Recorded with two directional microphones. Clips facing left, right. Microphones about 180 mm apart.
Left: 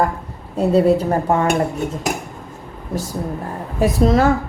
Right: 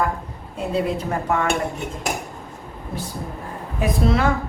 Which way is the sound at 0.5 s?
40° left (ahead or behind).